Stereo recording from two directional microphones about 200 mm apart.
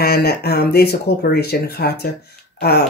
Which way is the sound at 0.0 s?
50° left (ahead or behind).